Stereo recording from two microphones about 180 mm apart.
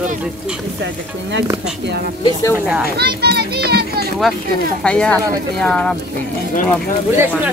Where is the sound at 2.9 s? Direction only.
60° right (ahead or behind).